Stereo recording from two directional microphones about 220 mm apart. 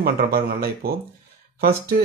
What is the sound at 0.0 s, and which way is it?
Speech, 45° right (ahead or behind).